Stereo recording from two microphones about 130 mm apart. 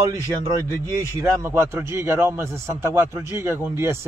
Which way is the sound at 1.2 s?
20° right (ahead or behind).